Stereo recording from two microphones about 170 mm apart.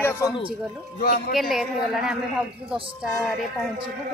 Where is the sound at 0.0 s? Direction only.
15° left (ahead or behind).